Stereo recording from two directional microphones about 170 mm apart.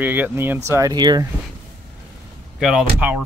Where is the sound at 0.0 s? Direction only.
10° right (ahead or behind).